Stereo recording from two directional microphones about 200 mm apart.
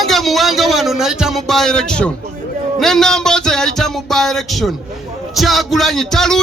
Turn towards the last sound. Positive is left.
turn(degrees=0)  # may be behind; listen again after turning